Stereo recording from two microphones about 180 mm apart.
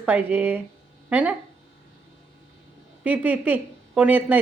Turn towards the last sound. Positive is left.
turn(degrees=-10)  # may be behind; listen again after turning